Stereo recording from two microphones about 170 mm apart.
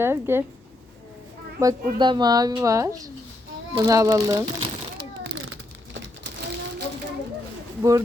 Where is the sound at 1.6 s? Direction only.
25° right (ahead or behind).